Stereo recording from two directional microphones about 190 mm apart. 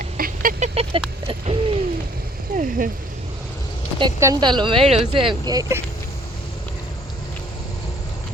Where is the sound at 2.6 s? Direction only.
45° right (ahead or behind).